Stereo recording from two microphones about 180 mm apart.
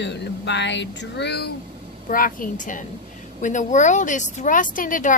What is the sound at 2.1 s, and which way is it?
Speech, 50° left (ahead or behind).